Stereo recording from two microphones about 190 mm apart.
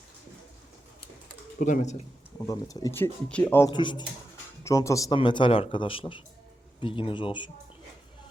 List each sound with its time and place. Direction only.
1.5 s speech: 40° left (ahead or behind)
2.5 s speech: 20° left (ahead or behind)
3.7 s speech: 25° left (ahead or behind)